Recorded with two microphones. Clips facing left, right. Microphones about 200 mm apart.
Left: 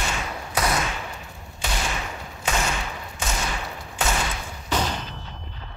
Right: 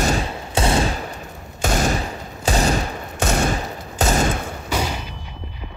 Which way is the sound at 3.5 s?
40° right (ahead or behind).